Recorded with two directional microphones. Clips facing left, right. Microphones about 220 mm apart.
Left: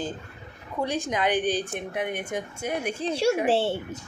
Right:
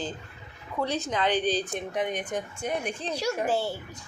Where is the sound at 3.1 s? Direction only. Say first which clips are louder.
Left 5 dB; 30° left (ahead or behind).